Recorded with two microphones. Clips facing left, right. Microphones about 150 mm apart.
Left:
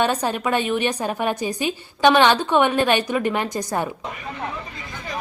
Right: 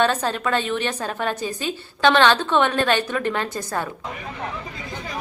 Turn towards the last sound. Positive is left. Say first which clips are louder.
# left 2 dB
turn(degrees=15)  # may be behind; listen again after turning